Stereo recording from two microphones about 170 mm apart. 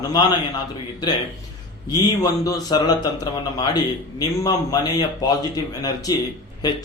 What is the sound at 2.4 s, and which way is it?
Speech, 20° left (ahead or behind).